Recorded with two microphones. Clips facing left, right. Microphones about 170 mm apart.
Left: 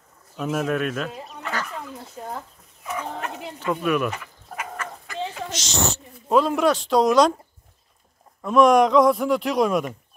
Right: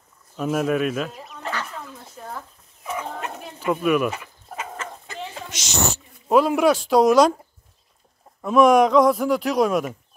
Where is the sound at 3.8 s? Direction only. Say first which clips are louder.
Right 3 dB; 5° right (ahead or behind).